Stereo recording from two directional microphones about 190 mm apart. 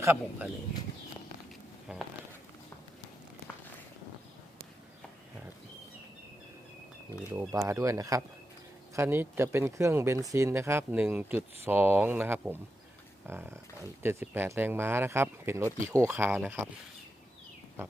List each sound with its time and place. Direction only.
0.0 s speech: 10° right (ahead or behind)
1.9 s a sound: 5° right (ahead or behind)
7.3 s speech: 15° right (ahead or behind)